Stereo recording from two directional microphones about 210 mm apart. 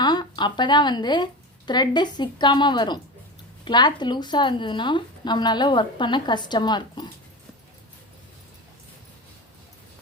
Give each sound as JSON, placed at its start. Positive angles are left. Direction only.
{"t": 0.0, "sound": "speech", "side_deg": 20}